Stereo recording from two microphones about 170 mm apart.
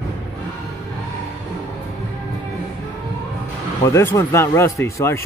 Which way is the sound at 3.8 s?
15° left (ahead or behind).